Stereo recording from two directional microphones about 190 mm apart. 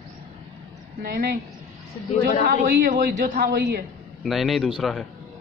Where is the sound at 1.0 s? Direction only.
55° right (ahead or behind).